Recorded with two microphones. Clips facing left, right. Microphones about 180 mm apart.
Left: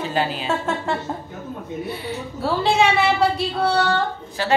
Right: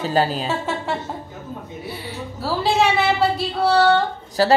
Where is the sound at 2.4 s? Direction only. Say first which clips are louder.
Left 1 dB; centre (ahead or behind).